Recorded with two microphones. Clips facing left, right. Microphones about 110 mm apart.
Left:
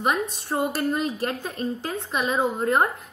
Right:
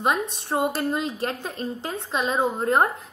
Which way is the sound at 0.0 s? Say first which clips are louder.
Even; 25° right (ahead or behind).